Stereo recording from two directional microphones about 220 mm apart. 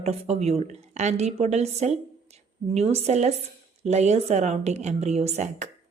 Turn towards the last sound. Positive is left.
turn(degrees=-30)  # may be behind; listen again after turning